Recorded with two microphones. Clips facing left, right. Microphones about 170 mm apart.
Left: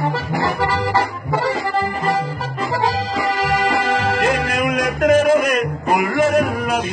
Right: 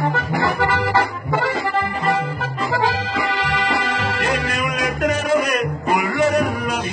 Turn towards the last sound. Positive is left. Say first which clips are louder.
# left 6 dB
turn(degrees=50)  # may be behind; listen again after turning